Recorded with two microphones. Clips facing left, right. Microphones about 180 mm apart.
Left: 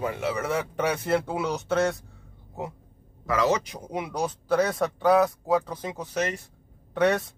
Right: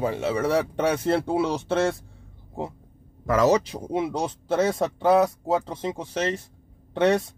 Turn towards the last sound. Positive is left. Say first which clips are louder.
# right 2 dB
turn(degrees=-25)  # may be behind; listen again after turning